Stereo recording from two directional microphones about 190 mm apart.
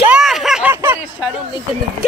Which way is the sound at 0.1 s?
Centre (ahead or behind).